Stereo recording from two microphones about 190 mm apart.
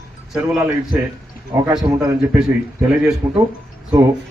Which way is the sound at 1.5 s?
15° right (ahead or behind).